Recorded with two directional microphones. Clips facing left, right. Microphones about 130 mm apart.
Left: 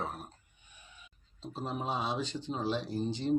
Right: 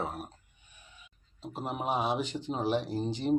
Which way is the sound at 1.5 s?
15° right (ahead or behind).